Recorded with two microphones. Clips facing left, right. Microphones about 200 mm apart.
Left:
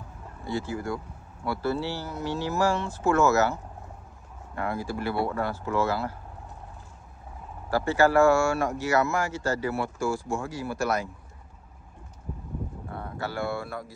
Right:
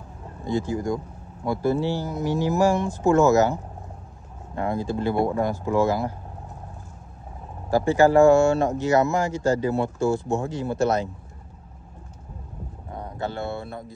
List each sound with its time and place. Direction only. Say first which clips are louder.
0.4 s speech: right 5 dB; 15° right (ahead or behind)
7.7 s speech: right 4 dB; 15° right (ahead or behind)
12.9 s speech: right 4 dB; 20° right (ahead or behind)